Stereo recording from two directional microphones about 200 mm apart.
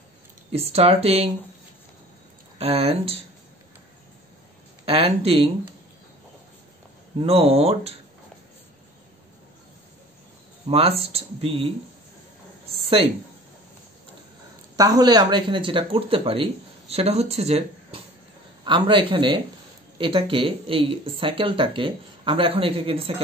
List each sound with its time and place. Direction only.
0.5 s speech: 30° right (ahead or behind)
2.6 s speech: 30° right (ahead or behind)
4.8 s speech: 30° right (ahead or behind)
7.2 s speech: 30° right (ahead or behind)
10.7 s speech: 30° right (ahead or behind)
12.8 s speech: 30° right (ahead or behind)
14.8 s speech: 20° right (ahead or behind)